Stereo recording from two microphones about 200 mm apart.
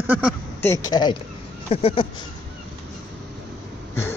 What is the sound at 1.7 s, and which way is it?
Speech, 30° left (ahead or behind).